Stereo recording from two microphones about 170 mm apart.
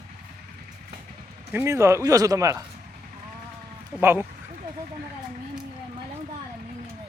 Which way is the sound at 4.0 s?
15° right (ahead or behind).